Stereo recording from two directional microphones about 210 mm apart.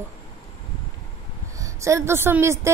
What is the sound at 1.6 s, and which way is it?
A woman's voice, 15° right (ahead or behind).